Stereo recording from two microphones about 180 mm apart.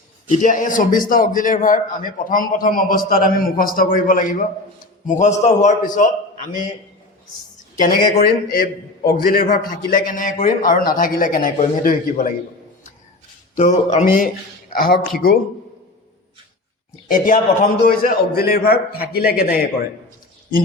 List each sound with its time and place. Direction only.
0.3 s a man's voice: 45° left (ahead or behind)
7.8 s a man's voice: 55° left (ahead or behind)
13.6 s a man's voice: 45° left (ahead or behind)
17.1 s a man's voice: 50° left (ahead or behind)